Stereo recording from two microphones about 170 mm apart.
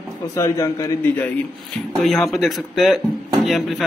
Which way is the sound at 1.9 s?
Centre (ahead or behind).